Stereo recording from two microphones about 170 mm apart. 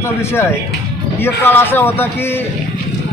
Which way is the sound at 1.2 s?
15° left (ahead or behind).